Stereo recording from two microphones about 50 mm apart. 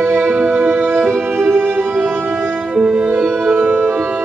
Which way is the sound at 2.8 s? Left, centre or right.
Right.